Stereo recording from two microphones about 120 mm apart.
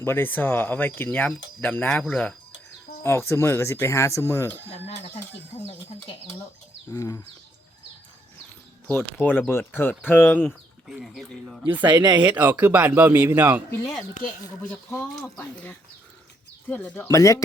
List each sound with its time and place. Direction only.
0.0 s speech: 20° left (ahead or behind)
3.0 s speech: 20° left (ahead or behind)
4.7 s speech: 65° left (ahead or behind)
6.9 s speech: 30° left (ahead or behind)
9.1 s speech: 15° left (ahead or behind)
10.4 s speech: 5° right (ahead or behind)
11.9 s speech: 35° right (ahead or behind)
12.2 s speech: 15° right (ahead or behind)
14.6 s speech: 15° left (ahead or behind)
17.1 s speech: 25° left (ahead or behind)